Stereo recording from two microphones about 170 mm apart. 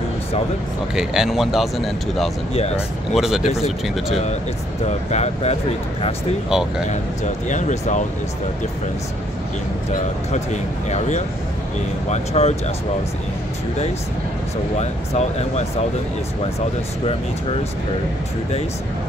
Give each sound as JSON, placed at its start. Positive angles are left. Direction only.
{"t": 0.9, "sound": "speech", "side_deg": -5}
{"t": 2.5, "sound": "speech", "side_deg": 35}
{"t": 3.2, "sound": "speech", "side_deg": 0}
{"t": 4.8, "sound": "speech", "side_deg": 40}
{"t": 6.5, "sound": "speech", "side_deg": -5}
{"t": 7.4, "sound": "speech", "side_deg": 45}
{"t": 10.9, "sound": "speech", "side_deg": 40}
{"t": 14.8, "sound": "speech", "side_deg": 40}